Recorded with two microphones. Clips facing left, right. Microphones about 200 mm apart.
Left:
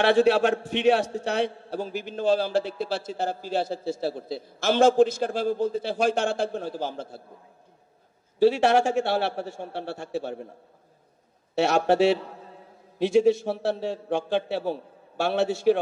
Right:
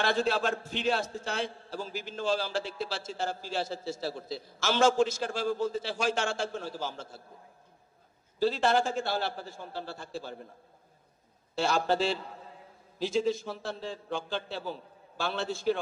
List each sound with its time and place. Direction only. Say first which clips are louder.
0.0 s a man's voice: left 9 dB; 70° left (ahead or behind)
8.4 s a man's voice: left 7 dB; 70° left (ahead or behind)
11.5 s a man's voice: left 7 dB; 70° left (ahead or behind)